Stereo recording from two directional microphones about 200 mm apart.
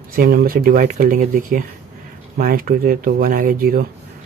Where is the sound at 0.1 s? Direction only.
50° right (ahead or behind).